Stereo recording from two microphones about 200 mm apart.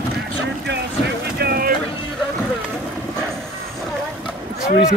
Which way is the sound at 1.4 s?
50° right (ahead or behind).